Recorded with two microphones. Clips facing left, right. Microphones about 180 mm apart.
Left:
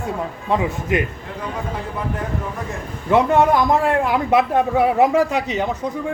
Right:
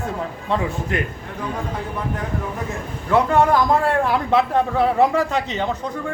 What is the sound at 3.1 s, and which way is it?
A man's voice, 20° left (ahead or behind).